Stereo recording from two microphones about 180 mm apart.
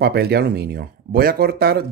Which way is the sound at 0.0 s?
60° right (ahead or behind).